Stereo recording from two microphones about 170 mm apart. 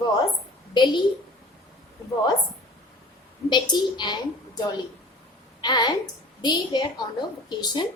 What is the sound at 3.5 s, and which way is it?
Speech, 25° left (ahead or behind).